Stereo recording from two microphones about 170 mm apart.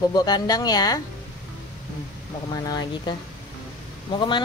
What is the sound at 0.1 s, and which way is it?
Speech, 25° left (ahead or behind).